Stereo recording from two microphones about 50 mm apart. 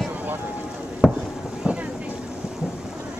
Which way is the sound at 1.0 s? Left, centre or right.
Centre.